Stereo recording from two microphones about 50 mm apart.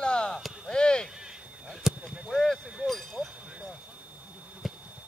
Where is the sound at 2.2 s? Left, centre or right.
Centre.